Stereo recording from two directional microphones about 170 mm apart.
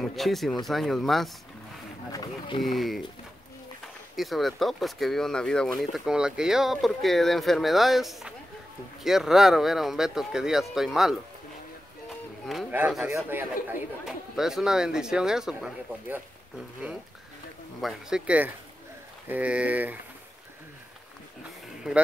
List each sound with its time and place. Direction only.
0.0 s speech: centre (ahead or behind)
2.1 s speech: 30° left (ahead or behind)
2.6 s speech: centre (ahead or behind)
4.2 s speech: centre (ahead or behind)
12.7 s speech: 10° right (ahead or behind)
17.7 s speech: centre (ahead or behind)
21.8 s speech: 5° right (ahead or behind)